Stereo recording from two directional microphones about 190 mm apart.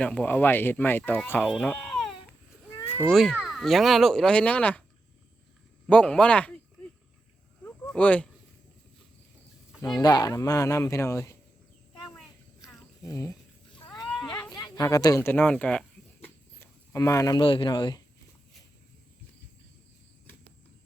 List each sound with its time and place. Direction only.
0.0 s speech: 5° left (ahead or behind)
3.1 s speech: 5° left (ahead or behind)
5.9 s speech: 5° left (ahead or behind)
7.6 s a sound: 5° left (ahead or behind)
9.8 s speech: 20° left (ahead or behind)
13.1 s speech: 15° left (ahead or behind)
14.5 s speech: 20° left (ahead or behind)